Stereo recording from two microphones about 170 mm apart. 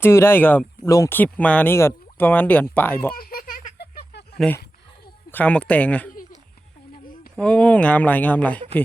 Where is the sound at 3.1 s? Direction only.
60° left (ahead or behind).